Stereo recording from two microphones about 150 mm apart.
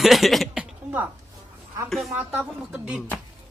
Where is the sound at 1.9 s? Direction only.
Centre (ahead or behind).